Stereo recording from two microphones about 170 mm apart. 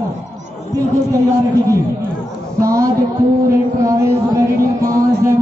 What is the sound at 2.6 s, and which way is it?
Speech, 20° right (ahead or behind).